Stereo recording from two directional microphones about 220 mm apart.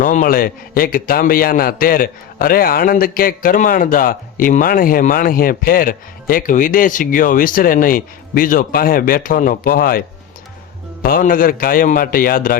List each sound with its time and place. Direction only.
0.0 s a man's voice: 35° left (ahead or behind)
11.0 s a man's voice: 40° left (ahead or behind)